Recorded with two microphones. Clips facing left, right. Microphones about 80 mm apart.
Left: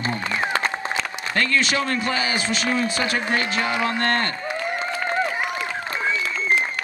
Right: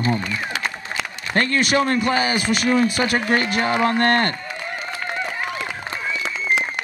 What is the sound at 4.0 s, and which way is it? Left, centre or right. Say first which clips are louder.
Speech: right 4 dB; right.